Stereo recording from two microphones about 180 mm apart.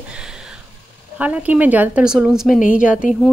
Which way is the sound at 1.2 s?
10° right (ahead or behind).